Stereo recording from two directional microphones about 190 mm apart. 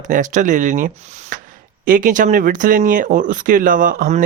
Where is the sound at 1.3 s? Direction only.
45° right (ahead or behind).